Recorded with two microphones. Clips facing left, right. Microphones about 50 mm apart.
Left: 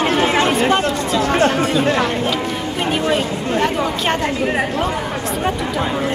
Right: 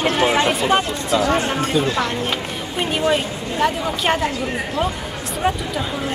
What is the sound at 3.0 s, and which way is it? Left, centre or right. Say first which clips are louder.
Speech: left 1 dB; centre.